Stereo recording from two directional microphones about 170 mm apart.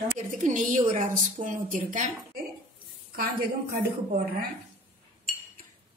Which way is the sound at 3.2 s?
60° right (ahead or behind).